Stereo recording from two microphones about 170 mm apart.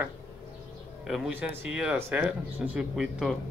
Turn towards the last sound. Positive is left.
turn(degrees=-5)  # may be behind; listen again after turning